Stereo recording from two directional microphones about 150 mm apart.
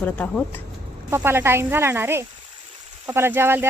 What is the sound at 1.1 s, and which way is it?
Speech, 15° right (ahead or behind).